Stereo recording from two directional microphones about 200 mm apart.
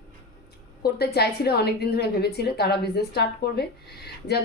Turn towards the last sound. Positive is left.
turn(degrees=55)  # may be behind; listen again after turning